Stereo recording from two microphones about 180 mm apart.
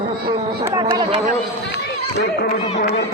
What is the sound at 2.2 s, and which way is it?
Speech, 70° left (ahead or behind).